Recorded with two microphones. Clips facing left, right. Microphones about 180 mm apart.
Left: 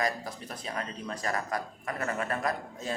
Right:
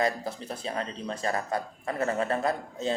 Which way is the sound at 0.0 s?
30° right (ahead or behind).